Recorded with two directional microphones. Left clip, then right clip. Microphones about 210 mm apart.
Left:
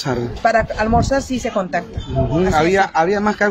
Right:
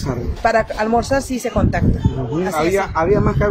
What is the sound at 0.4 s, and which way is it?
Speech, 10° right (ahead or behind).